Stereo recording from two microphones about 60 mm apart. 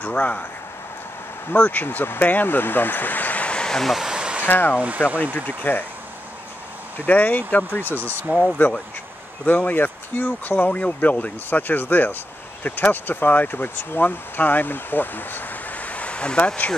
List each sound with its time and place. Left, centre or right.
0.0 s speech: left
1.5 s speech: left; by 3.9 s centre
3.9 s a sound: centre
4.5 s speech: left
4.7 s speech: right
5.3 s speech: left
7.1 s speech: left